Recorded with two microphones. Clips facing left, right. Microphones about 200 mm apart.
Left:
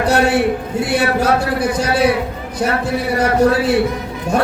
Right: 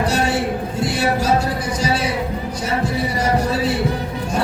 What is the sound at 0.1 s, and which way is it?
A man's voice, 60° left (ahead or behind).